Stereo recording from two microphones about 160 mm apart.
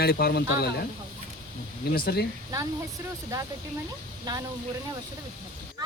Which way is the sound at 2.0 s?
70° left (ahead or behind).